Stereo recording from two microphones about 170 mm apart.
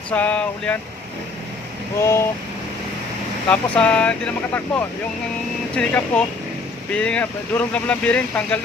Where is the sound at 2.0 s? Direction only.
15° left (ahead or behind).